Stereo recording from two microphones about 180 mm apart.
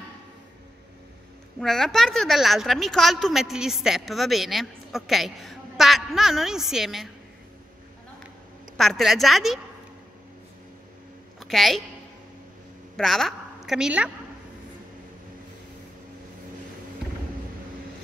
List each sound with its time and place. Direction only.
1.6 s a woman's voice: 5° left (ahead or behind)
8.7 s a woman's voice: centre (ahead or behind)
11.3 s a sound: centre (ahead or behind)
12.9 s a woman's voice: centre (ahead or behind)